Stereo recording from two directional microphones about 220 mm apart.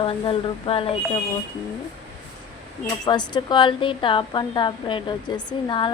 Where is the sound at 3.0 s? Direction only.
20° left (ahead or behind).